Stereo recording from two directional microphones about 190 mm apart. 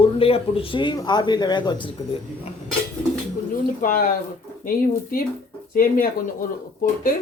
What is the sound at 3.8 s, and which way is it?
Speech, 50° left (ahead or behind).